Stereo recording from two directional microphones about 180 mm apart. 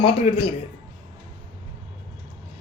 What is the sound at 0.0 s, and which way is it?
Speech, 30° left (ahead or behind).